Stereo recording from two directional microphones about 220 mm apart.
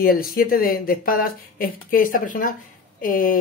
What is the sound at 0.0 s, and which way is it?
Speech, 40° left (ahead or behind).